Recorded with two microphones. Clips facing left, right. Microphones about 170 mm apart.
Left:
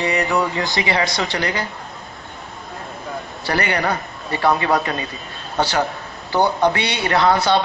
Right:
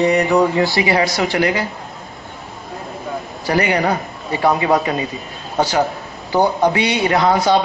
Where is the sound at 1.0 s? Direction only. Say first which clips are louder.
Right 5 dB; 5° right (ahead or behind).